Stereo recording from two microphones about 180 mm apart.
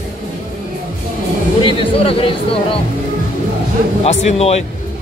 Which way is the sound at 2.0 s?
30° left (ahead or behind).